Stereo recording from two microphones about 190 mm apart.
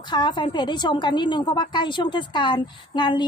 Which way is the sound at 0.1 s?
25° left (ahead or behind).